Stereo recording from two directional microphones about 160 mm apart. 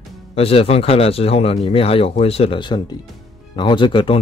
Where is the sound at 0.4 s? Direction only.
40° left (ahead or behind).